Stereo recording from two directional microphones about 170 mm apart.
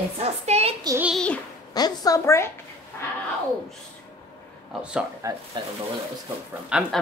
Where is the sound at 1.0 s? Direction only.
5° right (ahead or behind).